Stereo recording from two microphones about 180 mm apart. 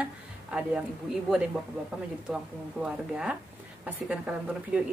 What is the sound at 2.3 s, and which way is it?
A woman's voice, 5° right (ahead or behind).